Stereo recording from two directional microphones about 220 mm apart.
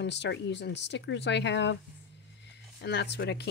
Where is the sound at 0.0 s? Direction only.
50° left (ahead or behind).